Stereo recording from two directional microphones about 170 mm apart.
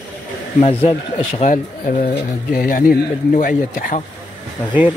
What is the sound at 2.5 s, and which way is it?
Speech, 60° left (ahead or behind).